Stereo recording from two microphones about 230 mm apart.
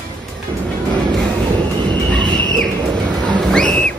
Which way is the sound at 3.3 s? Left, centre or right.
Centre.